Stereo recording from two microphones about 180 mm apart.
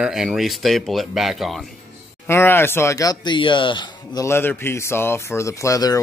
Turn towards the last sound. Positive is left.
turn(degrees=20)  # may be behind; listen again after turning